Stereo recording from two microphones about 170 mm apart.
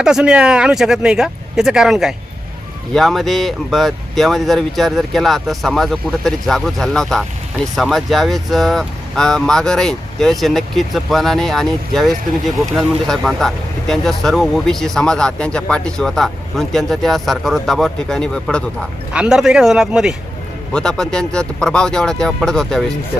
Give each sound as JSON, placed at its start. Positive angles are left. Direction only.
{"t": 0.0, "sound": "speech", "side_deg": -5}